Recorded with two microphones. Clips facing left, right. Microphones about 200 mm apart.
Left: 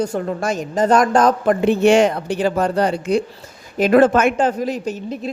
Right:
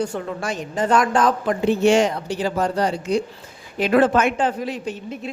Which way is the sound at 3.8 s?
45° left (ahead or behind).